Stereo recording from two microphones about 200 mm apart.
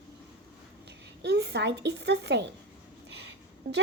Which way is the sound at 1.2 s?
55° right (ahead or behind).